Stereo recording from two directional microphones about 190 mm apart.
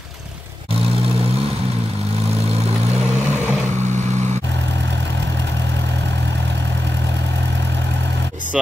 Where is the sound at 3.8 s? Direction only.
40° right (ahead or behind).